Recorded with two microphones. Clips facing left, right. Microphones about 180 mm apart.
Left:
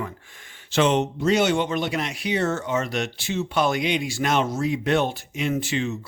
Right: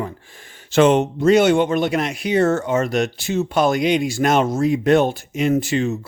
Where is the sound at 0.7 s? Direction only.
50° right (ahead or behind).